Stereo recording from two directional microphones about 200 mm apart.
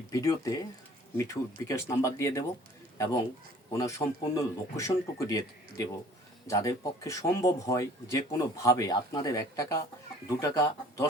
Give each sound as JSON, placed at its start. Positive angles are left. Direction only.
{"t": 0.1, "sound": "speech", "side_deg": 15}
{"t": 3.7, "sound": "speech", "side_deg": 15}